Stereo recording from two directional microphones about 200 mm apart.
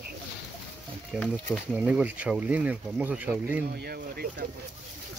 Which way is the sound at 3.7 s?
50° right (ahead or behind).